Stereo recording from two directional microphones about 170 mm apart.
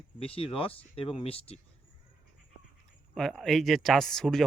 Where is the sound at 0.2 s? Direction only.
35° left (ahead or behind).